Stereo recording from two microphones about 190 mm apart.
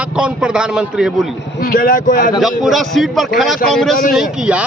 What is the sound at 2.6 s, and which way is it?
A man's voice, centre (ahead or behind).